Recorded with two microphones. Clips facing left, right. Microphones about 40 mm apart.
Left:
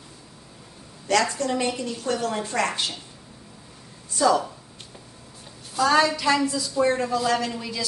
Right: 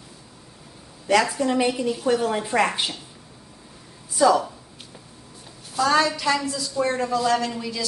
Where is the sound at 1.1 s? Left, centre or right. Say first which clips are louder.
Right 2 dB; centre.